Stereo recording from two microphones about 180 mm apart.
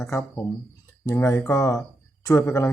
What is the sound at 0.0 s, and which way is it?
Speech, 15° left (ahead or behind).